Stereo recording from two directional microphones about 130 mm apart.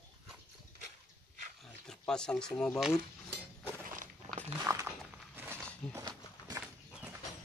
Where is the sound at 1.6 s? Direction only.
5° left (ahead or behind).